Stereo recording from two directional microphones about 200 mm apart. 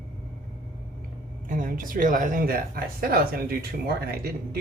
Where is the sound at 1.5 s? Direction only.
40° right (ahead or behind).